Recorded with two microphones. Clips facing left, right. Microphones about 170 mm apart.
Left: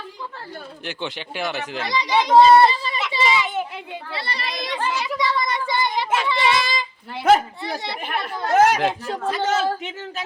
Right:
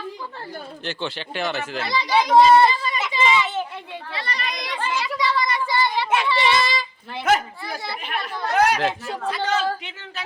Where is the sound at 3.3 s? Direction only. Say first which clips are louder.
Right 1 dB; 10° left (ahead or behind).